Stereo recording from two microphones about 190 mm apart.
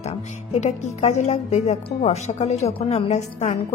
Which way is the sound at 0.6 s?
35° left (ahead or behind).